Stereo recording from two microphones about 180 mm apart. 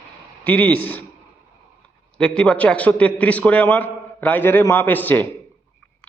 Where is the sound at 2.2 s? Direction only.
5° left (ahead or behind).